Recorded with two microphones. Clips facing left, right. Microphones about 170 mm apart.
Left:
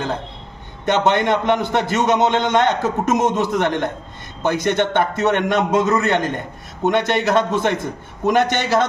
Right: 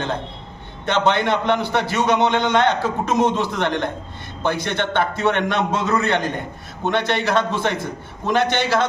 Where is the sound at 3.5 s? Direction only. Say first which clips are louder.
Left 3 dB; 15° left (ahead or behind).